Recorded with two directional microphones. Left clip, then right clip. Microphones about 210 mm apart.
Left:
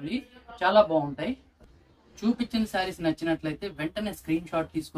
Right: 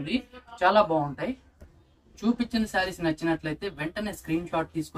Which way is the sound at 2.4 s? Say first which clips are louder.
Right 3 dB; 25° left (ahead or behind).